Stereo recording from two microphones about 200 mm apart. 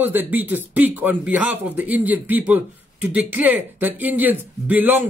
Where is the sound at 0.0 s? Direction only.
10° right (ahead or behind).